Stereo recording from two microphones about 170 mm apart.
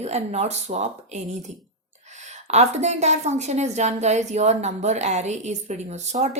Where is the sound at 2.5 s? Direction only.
40° right (ahead or behind).